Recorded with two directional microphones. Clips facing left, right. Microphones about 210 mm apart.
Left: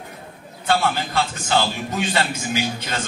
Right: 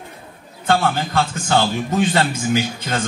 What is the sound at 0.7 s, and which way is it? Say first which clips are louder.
A man's voice: right 3 dB; 50° right (ahead or behind).